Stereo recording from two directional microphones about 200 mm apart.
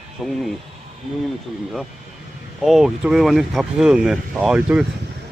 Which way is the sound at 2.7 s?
Centre (ahead or behind).